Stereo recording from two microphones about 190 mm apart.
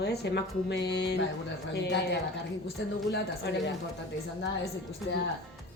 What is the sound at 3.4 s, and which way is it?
Speech, 65° left (ahead or behind).